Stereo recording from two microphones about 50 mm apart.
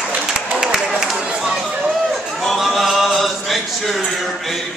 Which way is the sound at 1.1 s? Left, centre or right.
Right.